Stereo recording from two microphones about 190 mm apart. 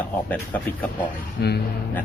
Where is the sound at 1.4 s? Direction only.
60° left (ahead or behind).